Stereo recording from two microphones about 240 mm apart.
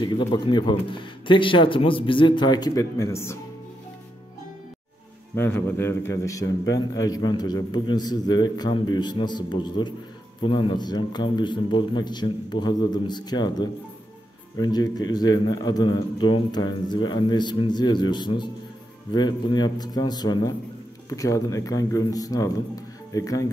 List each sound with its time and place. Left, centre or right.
0.0 s a man's voice: centre
5.3 s a man's voice: centre